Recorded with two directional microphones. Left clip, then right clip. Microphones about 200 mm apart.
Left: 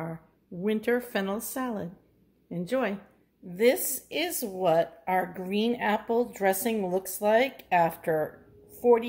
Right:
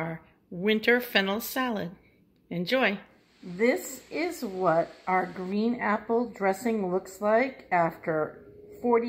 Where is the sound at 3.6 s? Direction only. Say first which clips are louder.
Left 2 dB; 30° left (ahead or behind).